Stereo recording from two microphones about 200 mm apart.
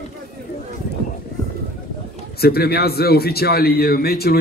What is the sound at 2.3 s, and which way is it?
A man's voice, 50° left (ahead or behind).